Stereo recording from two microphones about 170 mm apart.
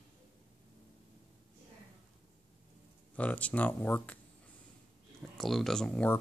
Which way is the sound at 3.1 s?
10° left (ahead or behind).